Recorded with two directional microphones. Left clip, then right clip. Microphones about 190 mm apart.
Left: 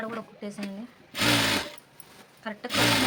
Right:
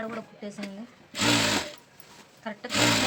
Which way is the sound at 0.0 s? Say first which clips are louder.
Left 1 dB; 20° left (ahead or behind).